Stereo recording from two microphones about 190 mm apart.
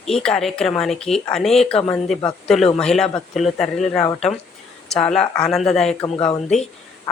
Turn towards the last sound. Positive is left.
turn(degrees=25)  # may be behind; listen again after turning